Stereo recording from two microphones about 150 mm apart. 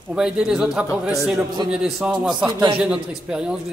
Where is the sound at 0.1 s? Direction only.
5° right (ahead or behind).